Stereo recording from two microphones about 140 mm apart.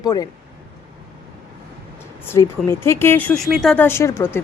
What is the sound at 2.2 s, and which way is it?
A woman's voice, 20° left (ahead or behind).